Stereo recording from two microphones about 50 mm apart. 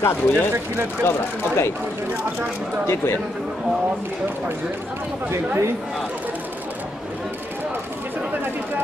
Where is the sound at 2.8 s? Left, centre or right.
Left.